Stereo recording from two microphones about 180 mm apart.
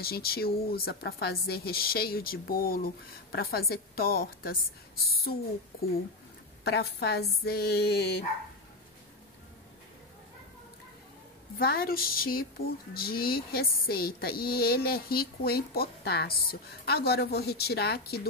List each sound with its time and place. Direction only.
0.0 s speech: 55° left (ahead or behind)
11.5 s speech: 60° left (ahead or behind)